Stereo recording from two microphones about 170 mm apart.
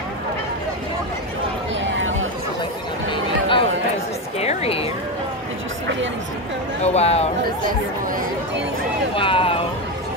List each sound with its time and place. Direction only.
3.1 s a sound: 30° left (ahead or behind)
4.4 s speech: 35° left (ahead or behind)
6.8 s speech: 40° left (ahead or behind)
9.1 s speech: 30° left (ahead or behind)